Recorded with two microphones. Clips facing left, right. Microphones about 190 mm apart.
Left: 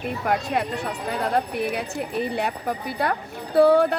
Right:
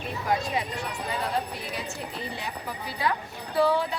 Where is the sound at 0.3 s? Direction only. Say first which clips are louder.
Left 3 dB; 60° left (ahead or behind).